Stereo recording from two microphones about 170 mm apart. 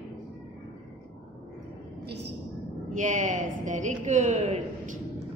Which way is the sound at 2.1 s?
80° right.